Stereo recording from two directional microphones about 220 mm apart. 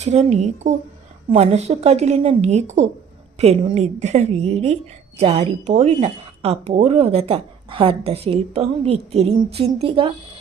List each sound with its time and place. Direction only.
0.0 s a woman's voice: 30° right (ahead or behind)